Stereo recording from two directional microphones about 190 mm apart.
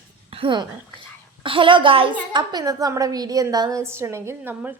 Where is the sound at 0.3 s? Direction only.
25° right (ahead or behind).